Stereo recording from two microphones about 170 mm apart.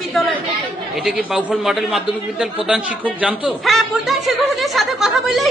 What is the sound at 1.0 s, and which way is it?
A man's voice, centre (ahead or behind).